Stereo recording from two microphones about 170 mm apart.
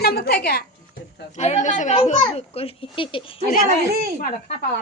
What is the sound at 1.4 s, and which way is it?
Speech, 45° left (ahead or behind).